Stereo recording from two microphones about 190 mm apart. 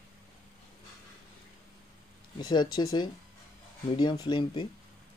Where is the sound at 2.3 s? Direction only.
25° left (ahead or behind).